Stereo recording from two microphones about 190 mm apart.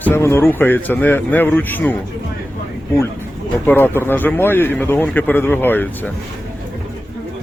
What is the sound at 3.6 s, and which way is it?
A man's voice, 10° left (ahead or behind).